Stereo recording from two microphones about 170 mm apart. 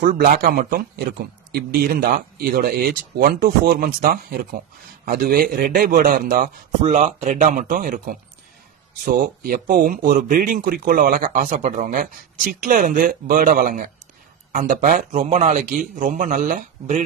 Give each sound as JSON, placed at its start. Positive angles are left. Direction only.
{"t": 0.0, "sound": "a man's voice", "side_deg": -60}